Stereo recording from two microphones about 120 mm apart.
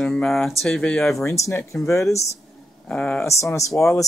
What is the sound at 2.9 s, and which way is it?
Speech, 5° left (ahead or behind).